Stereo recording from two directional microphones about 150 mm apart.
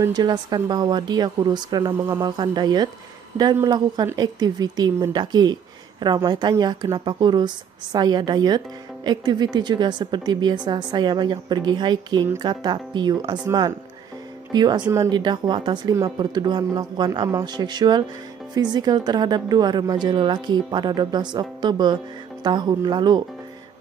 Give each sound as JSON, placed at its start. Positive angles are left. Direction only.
{"t": 0.0, "sound": "a woman's voice", "side_deg": -30}
{"t": 13.5, "sound": "a woman's voice", "side_deg": -20}